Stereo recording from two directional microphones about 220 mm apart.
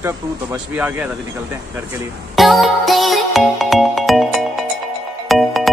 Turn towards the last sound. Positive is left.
turn(degrees=0)  # may be behind; listen again after turning